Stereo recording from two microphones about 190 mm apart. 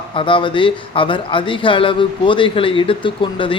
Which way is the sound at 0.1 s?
25° left (ahead or behind).